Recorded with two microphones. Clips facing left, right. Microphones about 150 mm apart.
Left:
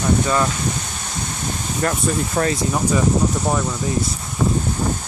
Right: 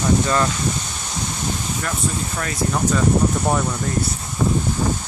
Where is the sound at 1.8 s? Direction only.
45° left (ahead or behind).